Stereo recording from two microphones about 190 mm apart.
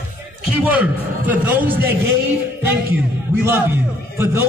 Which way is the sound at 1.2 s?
10° right (ahead or behind).